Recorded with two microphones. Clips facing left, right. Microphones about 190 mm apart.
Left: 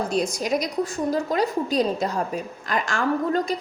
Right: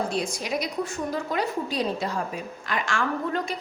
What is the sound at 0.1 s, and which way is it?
A woman's voice, 40° left (ahead or behind).